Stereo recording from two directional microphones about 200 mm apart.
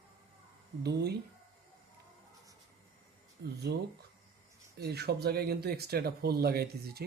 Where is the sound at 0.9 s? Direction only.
55° right (ahead or behind).